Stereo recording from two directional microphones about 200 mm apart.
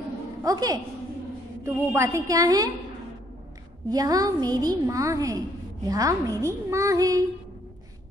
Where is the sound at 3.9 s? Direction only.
20° right (ahead or behind).